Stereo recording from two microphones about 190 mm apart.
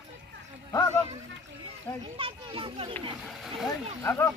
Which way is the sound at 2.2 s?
30° right (ahead or behind).